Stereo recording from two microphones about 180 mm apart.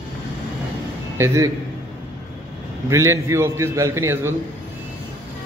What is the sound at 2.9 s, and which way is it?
A man's voice, 15° right (ahead or behind).